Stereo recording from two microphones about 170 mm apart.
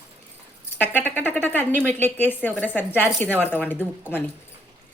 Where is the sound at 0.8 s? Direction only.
10° left (ahead or behind).